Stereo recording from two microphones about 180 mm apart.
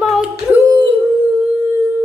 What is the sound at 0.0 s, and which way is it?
Singing, 5° right (ahead or behind).